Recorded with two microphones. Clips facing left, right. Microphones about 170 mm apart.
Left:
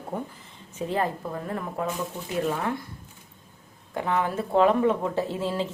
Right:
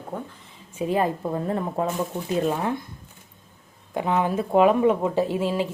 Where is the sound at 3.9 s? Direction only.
15° right (ahead or behind).